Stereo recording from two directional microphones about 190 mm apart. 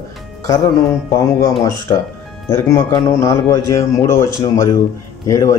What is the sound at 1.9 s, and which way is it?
A man's voice, 20° left (ahead or behind).